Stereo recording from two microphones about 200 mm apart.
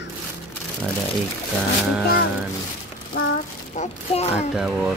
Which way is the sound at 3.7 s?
35° left (ahead or behind).